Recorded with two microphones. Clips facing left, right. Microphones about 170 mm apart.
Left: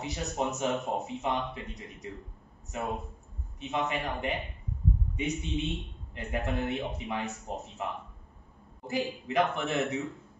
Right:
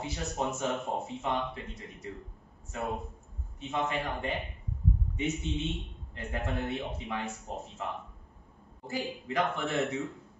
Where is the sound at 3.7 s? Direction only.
20° left (ahead or behind).